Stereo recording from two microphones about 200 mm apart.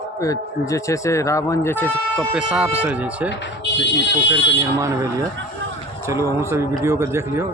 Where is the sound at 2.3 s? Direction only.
5° right (ahead or behind).